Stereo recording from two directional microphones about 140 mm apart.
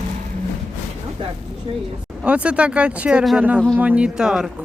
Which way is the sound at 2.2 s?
10° right (ahead or behind).